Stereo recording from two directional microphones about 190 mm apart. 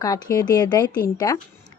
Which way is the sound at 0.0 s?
20° left (ahead or behind).